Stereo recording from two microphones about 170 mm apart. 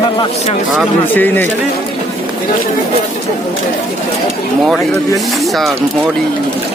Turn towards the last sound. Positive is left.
turn(degrees=0)  # may be behind; listen again after turning